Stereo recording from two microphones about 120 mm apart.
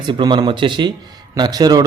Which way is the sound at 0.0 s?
40° right (ahead or behind).